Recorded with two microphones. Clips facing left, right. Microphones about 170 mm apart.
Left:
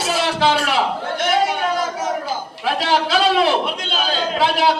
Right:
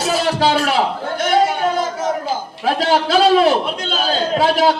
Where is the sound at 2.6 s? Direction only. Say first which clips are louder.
Right 3 dB; 40° right (ahead or behind).